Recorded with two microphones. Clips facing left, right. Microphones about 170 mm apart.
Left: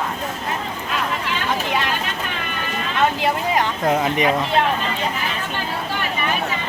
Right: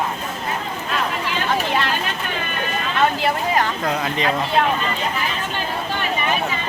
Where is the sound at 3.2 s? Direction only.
20° left (ahead or behind).